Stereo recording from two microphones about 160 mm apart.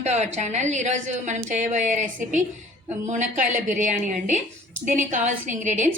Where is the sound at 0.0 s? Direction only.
45° right (ahead or behind).